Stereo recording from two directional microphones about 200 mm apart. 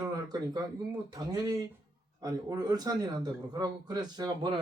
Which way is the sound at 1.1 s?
20° right (ahead or behind).